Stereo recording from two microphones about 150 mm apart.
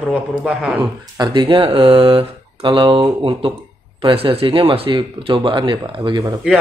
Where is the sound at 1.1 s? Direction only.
30° right (ahead or behind).